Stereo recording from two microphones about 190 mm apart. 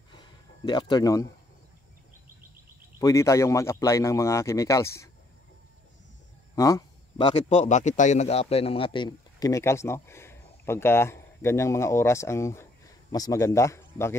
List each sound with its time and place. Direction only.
0.1 s a sound: 25° left (ahead or behind)
3.0 s speech: 15° left (ahead or behind)
6.5 s a man's voice: 20° left (ahead or behind)